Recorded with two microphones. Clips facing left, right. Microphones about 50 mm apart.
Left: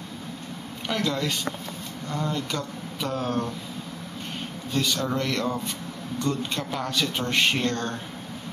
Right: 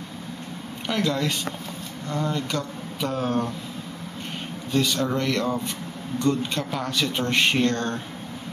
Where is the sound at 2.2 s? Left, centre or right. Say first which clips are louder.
Right 2 dB; centre.